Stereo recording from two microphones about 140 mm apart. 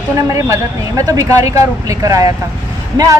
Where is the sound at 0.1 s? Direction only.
20° right (ahead or behind).